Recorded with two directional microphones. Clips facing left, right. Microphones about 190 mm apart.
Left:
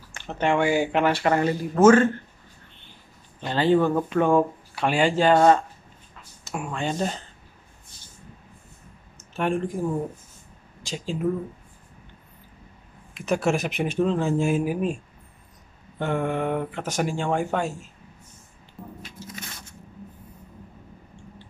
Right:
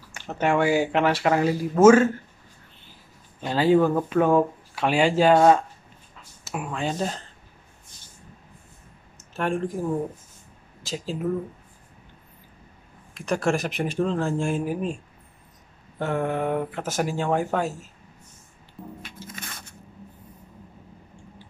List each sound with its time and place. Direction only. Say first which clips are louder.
0.3 s speech: right 1 dB; 5° right (ahead or behind)
9.3 s speech: left 1 dB; centre (ahead or behind)
10.8 s speech: even; centre (ahead or behind)
13.1 s speech: left 1 dB; centre (ahead or behind)
16.0 s speech: even; centre (ahead or behind)
19.0 s music: even; 55° right (ahead or behind)